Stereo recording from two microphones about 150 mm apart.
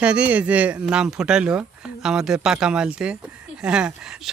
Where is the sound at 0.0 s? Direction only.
10° right (ahead or behind).